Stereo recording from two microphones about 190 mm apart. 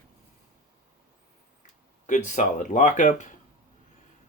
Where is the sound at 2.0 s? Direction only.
40° left (ahead or behind).